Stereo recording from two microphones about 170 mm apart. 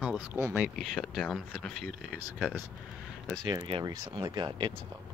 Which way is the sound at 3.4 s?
25° right (ahead or behind).